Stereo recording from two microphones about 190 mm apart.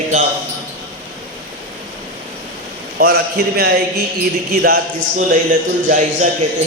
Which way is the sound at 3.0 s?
55° right (ahead or behind).